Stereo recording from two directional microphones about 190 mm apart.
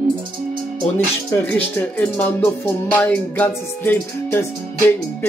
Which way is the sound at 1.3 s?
15° left (ahead or behind).